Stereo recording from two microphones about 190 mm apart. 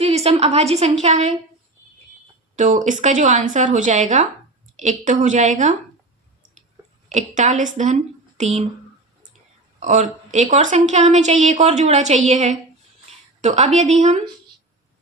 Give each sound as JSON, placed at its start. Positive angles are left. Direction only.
{"t": 0.0, "sound": "a woman's voice", "side_deg": -35}
{"t": 2.6, "sound": "a woman's voice", "side_deg": -40}
{"t": 7.1, "sound": "a woman's voice", "side_deg": -40}
{"t": 9.8, "sound": "a woman's voice", "side_deg": -40}